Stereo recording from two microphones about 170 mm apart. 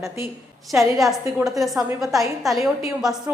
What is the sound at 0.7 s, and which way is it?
A woman's voice, centre (ahead or behind).